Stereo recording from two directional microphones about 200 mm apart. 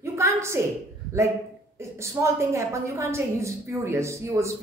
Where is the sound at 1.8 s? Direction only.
15° right (ahead or behind).